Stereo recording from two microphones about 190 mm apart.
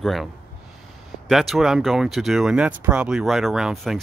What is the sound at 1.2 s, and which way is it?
Speech, centre (ahead or behind).